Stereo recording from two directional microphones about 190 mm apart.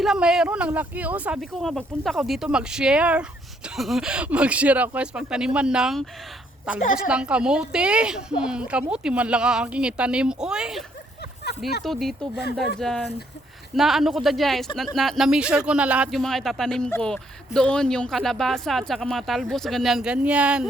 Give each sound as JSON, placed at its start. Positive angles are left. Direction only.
{"t": 0.0, "sound": "speech", "side_deg": -5}
{"t": 6.8, "sound": "a woman's voice", "side_deg": 45}
{"t": 7.1, "sound": "speech", "side_deg": -5}